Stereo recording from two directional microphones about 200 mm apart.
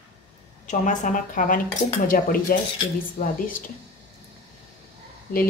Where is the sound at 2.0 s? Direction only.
45° left (ahead or behind).